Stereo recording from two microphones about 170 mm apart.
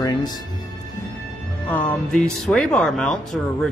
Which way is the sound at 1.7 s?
10° left (ahead or behind).